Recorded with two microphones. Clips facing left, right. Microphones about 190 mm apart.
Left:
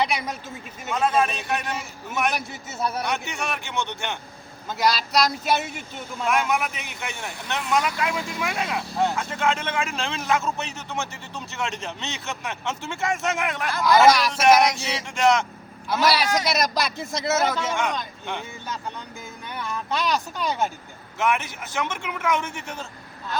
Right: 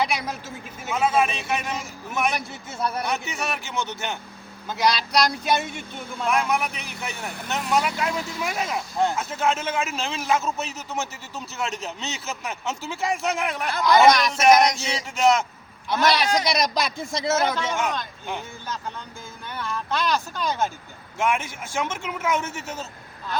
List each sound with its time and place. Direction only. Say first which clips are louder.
0.0 s a man's voice: even; 5° right (ahead or behind)
19.7 s speech: even; 5° left (ahead or behind)
21.2 s a man's voice: even; 10° right (ahead or behind)